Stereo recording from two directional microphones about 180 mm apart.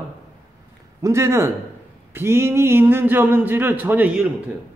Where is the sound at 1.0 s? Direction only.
15° right (ahead or behind).